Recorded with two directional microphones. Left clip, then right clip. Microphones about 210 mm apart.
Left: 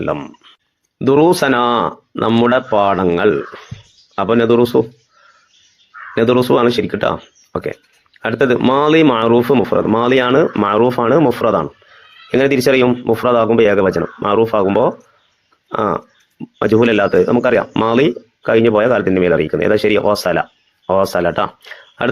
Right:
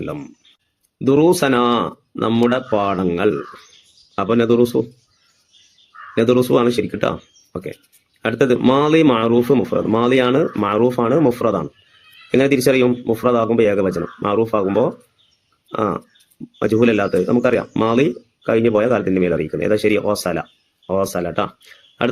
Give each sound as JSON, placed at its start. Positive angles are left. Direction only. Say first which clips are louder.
{"t": 0.0, "sound": "speech", "louder": "left 8 dB", "side_deg": 10}
{"t": 6.1, "sound": "speech", "louder": "left 2 dB", "side_deg": 10}